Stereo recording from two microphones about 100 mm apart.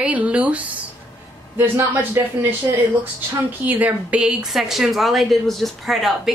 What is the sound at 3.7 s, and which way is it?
Speech, 15° right (ahead or behind).